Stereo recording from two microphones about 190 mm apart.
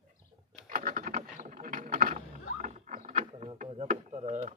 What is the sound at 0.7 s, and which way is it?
Boat, 45° right (ahead or behind).